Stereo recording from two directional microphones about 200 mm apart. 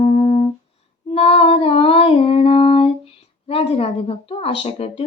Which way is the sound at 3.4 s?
30° left (ahead or behind).